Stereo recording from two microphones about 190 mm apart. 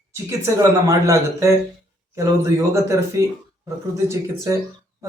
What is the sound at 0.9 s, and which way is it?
Speech, 15° right (ahead or behind).